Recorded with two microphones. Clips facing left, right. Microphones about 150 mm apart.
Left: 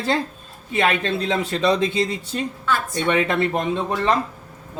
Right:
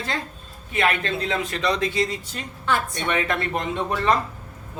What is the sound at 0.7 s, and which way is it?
Speech, 30° left (ahead or behind).